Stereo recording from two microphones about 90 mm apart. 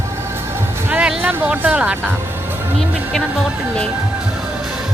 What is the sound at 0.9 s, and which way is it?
Speech, 10° right (ahead or behind).